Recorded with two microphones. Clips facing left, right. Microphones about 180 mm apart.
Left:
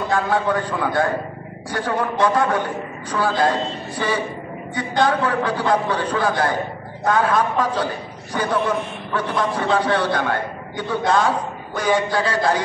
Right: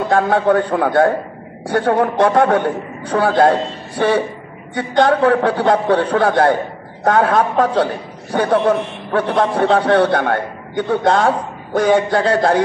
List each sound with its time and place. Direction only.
0.1 s a man's voice: 60° right (ahead or behind)
4.7 s a man's voice: 60° right (ahead or behind)